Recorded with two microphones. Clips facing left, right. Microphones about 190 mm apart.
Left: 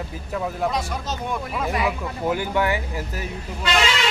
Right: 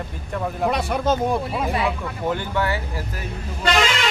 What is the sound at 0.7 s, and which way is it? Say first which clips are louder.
Speech: right 6 dB; 60° right (ahead or behind).